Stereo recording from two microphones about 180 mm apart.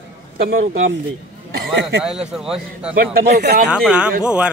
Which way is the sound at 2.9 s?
60° right (ahead or behind).